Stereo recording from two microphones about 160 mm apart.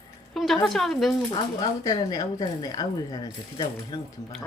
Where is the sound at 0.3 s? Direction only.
Centre (ahead or behind).